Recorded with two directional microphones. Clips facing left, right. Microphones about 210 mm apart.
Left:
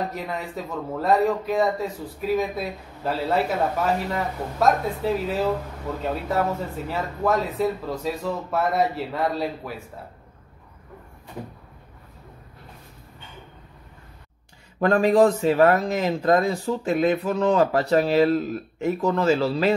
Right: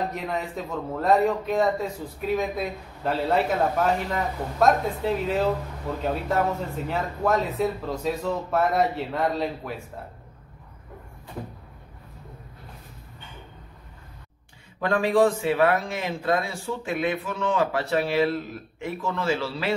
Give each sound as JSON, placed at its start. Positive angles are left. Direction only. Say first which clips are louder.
{"t": 0.1, "sound": "a man's voice", "louder": "right 1 dB", "side_deg": 0}
{"t": 6.9, "sound": "a man's voice", "louder": "left 1 dB", "side_deg": 0}
{"t": 14.8, "sound": "speech", "louder": "left 4 dB", "side_deg": 40}